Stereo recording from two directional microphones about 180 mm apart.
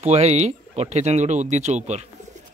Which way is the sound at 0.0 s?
35° right (ahead or behind).